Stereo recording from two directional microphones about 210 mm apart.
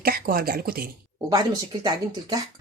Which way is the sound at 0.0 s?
45° right (ahead or behind).